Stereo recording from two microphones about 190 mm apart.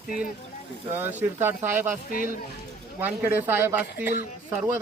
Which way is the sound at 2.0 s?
45° left (ahead or behind).